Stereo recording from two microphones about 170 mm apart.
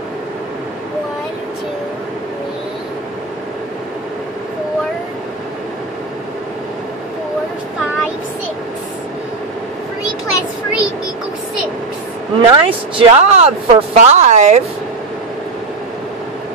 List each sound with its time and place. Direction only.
12.4 s speech: 30° right (ahead or behind)